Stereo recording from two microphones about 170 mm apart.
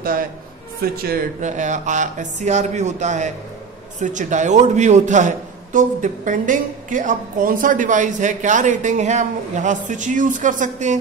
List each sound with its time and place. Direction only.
0.0 s a sound: 55° right (ahead or behind)
0.8 s speech: 60° right (ahead or behind)
1.4 s a man's voice: 45° right (ahead or behind)